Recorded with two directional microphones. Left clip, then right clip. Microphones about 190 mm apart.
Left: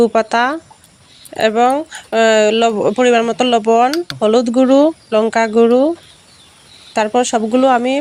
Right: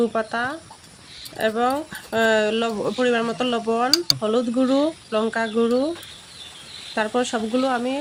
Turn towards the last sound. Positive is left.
turn(degrees=40)  # may be behind; listen again after turning